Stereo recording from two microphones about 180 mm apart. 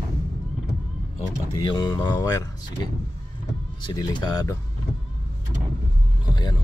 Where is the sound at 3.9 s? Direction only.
25° left (ahead or behind).